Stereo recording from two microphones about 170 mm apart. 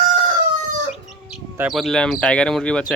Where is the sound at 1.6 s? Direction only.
Centre (ahead or behind).